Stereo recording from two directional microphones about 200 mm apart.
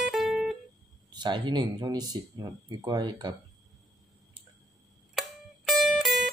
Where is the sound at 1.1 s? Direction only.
20° right (ahead or behind).